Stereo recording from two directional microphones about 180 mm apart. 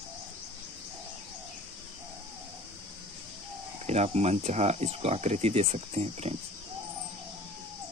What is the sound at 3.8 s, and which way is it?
Speech, 35° right (ahead or behind).